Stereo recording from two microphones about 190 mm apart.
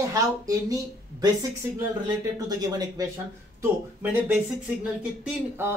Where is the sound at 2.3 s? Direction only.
20° right (ahead or behind).